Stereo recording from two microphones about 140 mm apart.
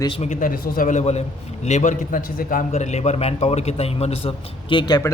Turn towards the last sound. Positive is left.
turn(degrees=30)  # may be behind; listen again after turning